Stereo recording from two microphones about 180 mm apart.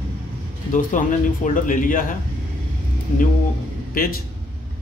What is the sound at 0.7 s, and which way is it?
A man's voice, 45° left (ahead or behind).